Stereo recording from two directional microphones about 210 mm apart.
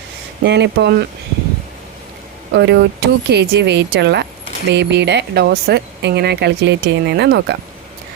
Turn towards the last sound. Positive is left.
turn(degrees=-55)  # may be behind; listen again after turning